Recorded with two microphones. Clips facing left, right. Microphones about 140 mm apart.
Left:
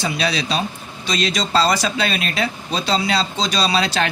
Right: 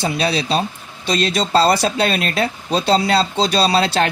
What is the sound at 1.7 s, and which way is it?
Speech, 30° right (ahead or behind).